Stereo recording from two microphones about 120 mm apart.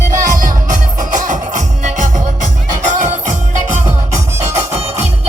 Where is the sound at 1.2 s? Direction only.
90° right.